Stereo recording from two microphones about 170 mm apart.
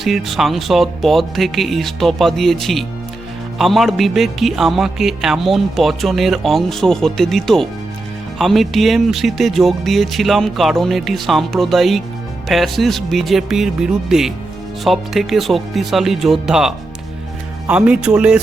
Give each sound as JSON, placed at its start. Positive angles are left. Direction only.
{"t": 0.0, "sound": "speech", "side_deg": 0}